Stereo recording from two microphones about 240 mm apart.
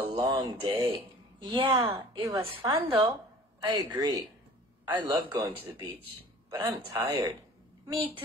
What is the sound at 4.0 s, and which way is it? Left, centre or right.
A woman's voice, centre.